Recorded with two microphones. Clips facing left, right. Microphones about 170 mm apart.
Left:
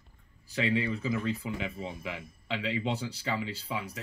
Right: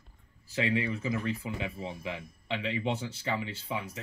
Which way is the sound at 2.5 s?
20° right (ahead or behind).